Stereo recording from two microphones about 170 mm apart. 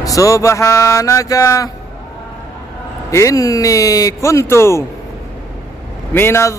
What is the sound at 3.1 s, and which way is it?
Speech, 20° left (ahead or behind).